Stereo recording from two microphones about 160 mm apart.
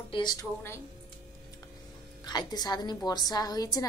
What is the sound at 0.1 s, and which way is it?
Speech, 25° left (ahead or behind).